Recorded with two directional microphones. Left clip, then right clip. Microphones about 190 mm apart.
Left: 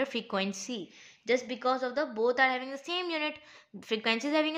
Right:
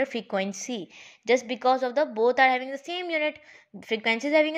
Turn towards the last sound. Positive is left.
turn(degrees=-15)  # may be behind; listen again after turning